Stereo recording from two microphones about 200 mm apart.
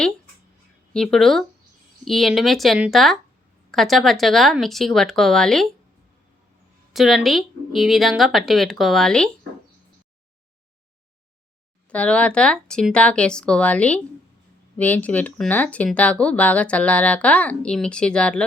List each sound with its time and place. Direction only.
0.9 s a woman's voice: centre (ahead or behind)
6.9 s a woman's voice: centre (ahead or behind)
11.9 s a woman's voice: 5° left (ahead or behind)